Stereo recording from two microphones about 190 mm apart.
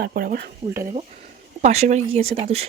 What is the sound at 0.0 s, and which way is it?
Speech, 50° right (ahead or behind).